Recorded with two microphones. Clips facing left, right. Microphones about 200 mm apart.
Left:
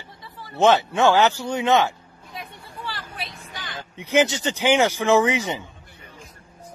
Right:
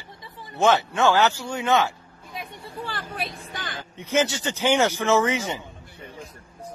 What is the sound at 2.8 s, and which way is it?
Vehicle, 50° right (ahead or behind).